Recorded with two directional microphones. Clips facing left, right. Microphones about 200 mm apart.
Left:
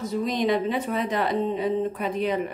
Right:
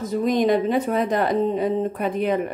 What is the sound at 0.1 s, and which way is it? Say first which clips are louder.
Speech: right 5 dB; 50° right (ahead or behind).